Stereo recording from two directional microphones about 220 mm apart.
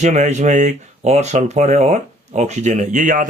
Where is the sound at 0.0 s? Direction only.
30° right (ahead or behind).